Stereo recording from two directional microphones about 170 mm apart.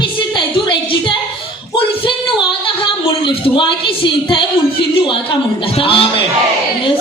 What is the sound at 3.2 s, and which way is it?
A woman's voice, 30° left (ahead or behind).